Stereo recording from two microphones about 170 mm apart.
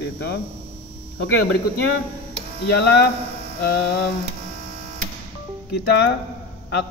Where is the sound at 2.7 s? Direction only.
80° left.